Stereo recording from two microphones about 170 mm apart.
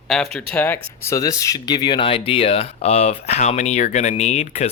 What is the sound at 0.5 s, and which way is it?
Speech, 15° left (ahead or behind).